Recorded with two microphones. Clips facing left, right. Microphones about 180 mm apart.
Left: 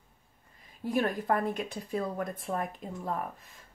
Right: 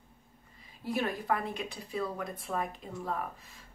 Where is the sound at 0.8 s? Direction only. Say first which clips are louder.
Left 3 dB; 45° left (ahead or behind).